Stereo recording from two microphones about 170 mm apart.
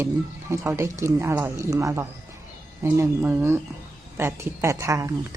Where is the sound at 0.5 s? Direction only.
15° right (ahead or behind).